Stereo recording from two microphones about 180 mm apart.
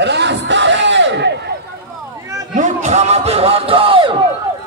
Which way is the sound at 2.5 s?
40° right (ahead or behind).